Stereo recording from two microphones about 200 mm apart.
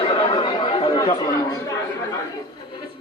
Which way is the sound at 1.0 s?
20° left (ahead or behind).